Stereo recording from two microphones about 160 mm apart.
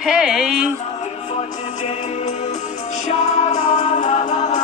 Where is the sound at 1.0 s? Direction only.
45° left (ahead or behind).